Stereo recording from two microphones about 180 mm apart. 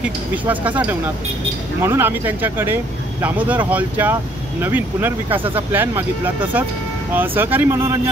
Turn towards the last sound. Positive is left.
turn(degrees=-15)  # may be behind; listen again after turning